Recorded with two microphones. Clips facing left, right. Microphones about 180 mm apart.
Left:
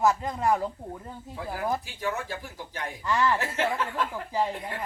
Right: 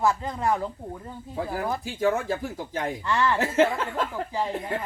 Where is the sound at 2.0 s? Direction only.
45° right (ahead or behind).